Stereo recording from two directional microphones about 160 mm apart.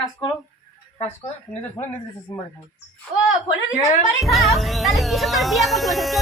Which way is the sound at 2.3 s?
35° left (ahead or behind).